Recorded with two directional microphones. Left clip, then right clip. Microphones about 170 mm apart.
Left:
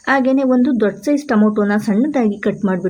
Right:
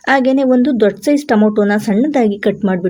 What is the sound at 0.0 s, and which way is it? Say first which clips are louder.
A woman's voice: right 3 dB; 25° right (ahead or behind).